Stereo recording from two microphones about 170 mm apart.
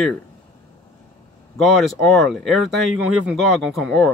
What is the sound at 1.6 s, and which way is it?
Speech, centre (ahead or behind).